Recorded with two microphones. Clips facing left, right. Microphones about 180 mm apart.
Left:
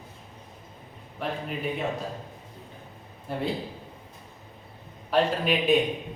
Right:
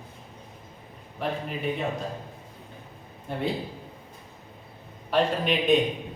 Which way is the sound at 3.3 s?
5° left (ahead or behind).